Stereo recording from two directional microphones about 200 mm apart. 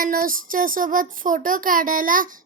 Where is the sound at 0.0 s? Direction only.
45° right (ahead or behind).